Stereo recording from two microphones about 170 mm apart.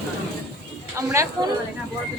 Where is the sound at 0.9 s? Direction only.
15° right (ahead or behind).